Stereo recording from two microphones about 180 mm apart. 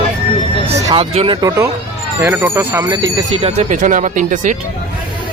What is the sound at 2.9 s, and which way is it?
Speech, 30° right (ahead or behind).